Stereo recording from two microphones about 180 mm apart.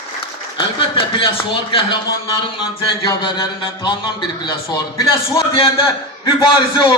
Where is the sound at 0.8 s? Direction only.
30° left (ahead or behind).